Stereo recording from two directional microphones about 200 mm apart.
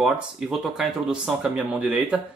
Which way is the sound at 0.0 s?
Centre (ahead or behind).